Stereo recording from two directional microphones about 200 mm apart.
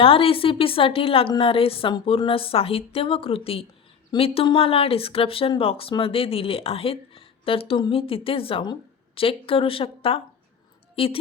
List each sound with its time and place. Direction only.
0.0 s a woman's voice: 25° left (ahead or behind)